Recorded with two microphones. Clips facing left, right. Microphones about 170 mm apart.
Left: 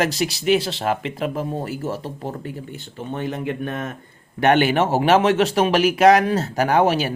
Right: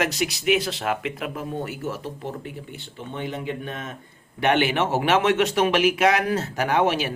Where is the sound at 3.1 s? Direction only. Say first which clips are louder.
Left 4 dB; 45° left (ahead or behind).